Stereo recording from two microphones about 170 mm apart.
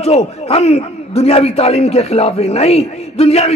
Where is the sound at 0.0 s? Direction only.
40° left (ahead or behind).